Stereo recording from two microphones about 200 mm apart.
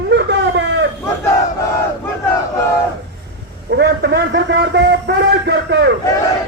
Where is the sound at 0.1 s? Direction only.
65° right (ahead or behind).